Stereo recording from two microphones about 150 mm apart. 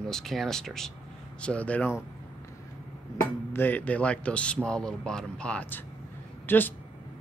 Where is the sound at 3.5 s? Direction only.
10° left (ahead or behind).